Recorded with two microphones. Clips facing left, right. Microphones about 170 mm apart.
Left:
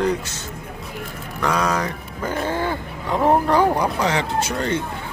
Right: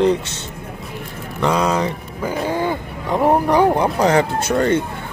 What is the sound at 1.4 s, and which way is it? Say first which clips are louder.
Speech: right 4 dB; 25° right (ahead or behind).